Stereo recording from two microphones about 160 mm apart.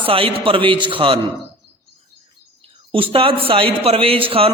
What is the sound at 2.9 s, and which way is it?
A man's voice, 35° right (ahead or behind).